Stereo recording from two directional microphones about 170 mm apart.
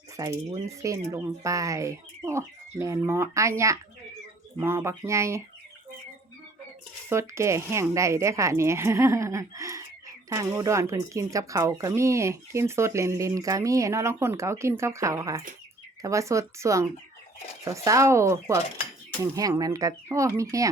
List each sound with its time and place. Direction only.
0.2 s speech: 20° right (ahead or behind)
7.1 s speech: 15° right (ahead or behind)